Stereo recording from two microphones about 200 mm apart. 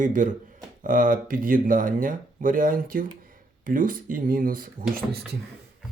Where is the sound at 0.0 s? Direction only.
40° right (ahead or behind).